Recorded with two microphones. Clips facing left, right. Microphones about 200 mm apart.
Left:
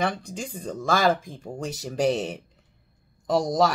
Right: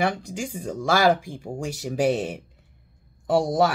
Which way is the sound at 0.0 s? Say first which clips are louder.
Right 2 dB; 10° right (ahead or behind).